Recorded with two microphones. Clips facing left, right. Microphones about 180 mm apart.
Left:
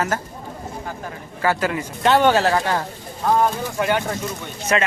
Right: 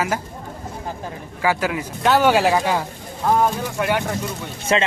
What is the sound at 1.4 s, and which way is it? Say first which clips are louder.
Speech: even; 10° right (ahead or behind).